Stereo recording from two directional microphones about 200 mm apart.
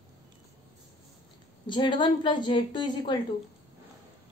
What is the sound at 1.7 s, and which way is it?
A woman's voice, 25° left (ahead or behind).